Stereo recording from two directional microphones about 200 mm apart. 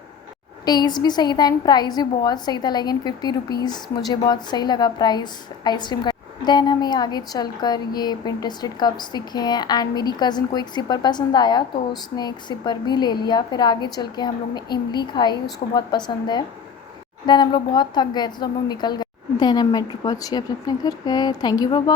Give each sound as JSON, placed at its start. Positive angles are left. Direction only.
{"t": 0.6, "sound": "a woman's voice", "side_deg": 20}